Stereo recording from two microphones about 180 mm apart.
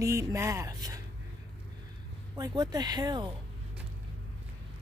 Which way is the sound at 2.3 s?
25° right (ahead or behind).